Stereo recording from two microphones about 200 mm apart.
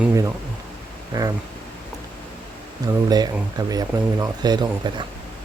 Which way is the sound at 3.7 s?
20° right (ahead or behind).